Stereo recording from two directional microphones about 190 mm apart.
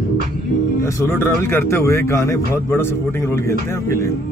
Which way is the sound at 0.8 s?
15° left (ahead or behind).